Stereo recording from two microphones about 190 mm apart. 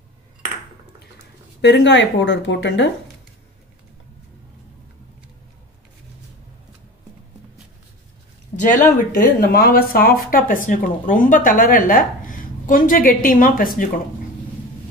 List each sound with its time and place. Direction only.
1.6 s speech: 65° left (ahead or behind)
8.5 s speech: 40° left (ahead or behind)